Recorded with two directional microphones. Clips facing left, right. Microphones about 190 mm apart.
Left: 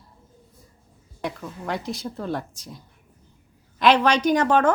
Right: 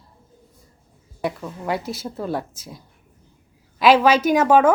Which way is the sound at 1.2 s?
5° right (ahead or behind).